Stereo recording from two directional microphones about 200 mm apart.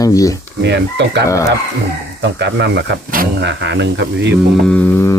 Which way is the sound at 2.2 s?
60° right (ahead or behind).